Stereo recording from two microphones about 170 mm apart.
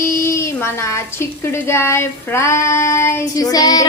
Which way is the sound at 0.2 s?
15° left (ahead or behind).